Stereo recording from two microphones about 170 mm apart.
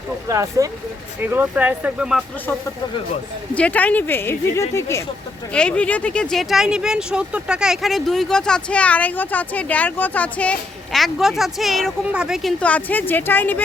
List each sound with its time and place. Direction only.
0.3 s speech: 20° right (ahead or behind)
3.5 s speech: 10° left (ahead or behind)
5.5 s speech: 5° left (ahead or behind)